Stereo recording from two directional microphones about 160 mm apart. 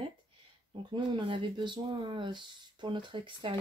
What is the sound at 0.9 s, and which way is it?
Speech, 30° right (ahead or behind).